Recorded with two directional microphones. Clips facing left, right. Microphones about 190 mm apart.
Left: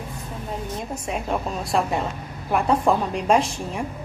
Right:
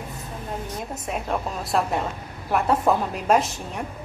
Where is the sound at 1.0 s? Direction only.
Centre (ahead or behind).